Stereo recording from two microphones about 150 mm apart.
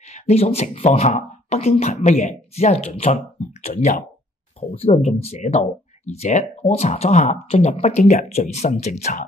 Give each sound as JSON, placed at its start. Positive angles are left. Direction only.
{"t": 0.1, "sound": "speech", "side_deg": 45}